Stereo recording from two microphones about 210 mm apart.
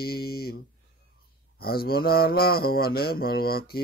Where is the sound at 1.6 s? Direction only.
45° left (ahead or behind).